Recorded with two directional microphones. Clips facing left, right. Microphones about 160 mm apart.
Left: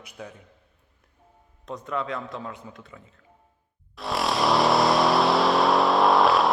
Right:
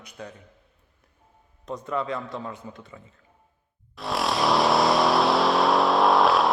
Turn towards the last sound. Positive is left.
turn(degrees=0)  # may be behind; listen again after turning